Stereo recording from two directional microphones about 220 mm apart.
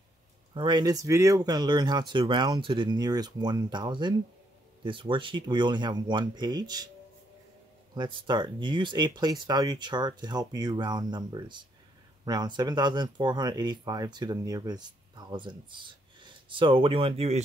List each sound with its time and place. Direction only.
0.6 s speech: 20° right (ahead or behind)
7.9 s speech: 20° right (ahead or behind)